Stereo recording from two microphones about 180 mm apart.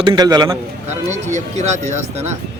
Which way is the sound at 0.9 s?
40° right (ahead or behind).